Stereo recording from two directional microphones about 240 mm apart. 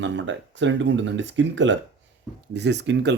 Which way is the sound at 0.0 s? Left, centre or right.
Right.